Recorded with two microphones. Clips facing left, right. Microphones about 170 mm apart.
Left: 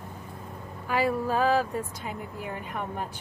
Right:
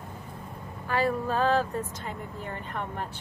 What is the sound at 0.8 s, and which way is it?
Speech, 10° left (ahead or behind).